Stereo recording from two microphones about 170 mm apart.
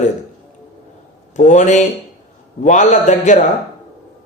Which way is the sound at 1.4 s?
45° left (ahead or behind).